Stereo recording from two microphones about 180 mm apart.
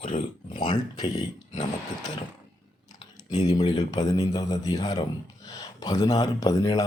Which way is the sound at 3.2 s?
20° left (ahead or behind).